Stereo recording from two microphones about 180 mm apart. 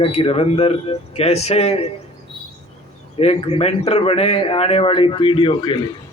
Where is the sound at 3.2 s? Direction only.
35° left (ahead or behind).